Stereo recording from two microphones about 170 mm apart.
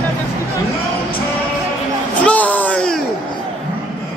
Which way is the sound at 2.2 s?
10° left (ahead or behind).